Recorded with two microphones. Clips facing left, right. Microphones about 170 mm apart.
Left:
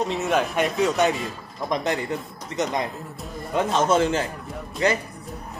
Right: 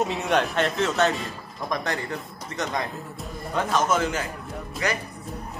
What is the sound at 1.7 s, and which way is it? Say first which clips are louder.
A man's voice: left 4 dB; 20° left (ahead or behind).